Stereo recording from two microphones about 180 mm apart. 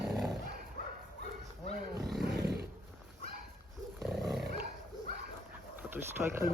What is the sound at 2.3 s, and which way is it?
Roaring cats, 65° right (ahead or behind).